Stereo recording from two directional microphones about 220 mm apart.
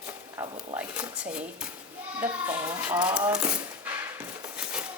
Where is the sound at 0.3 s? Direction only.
15° right (ahead or behind).